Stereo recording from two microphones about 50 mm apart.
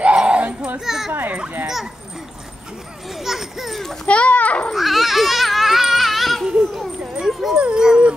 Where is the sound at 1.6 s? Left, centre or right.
Centre.